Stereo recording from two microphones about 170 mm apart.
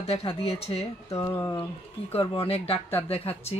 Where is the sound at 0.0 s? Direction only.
35° left (ahead or behind).